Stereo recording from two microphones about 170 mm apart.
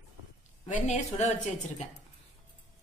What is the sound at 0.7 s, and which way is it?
Speech, 45° left (ahead or behind).